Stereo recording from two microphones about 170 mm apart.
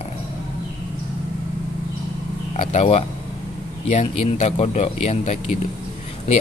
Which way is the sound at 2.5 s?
40° left (ahead or behind).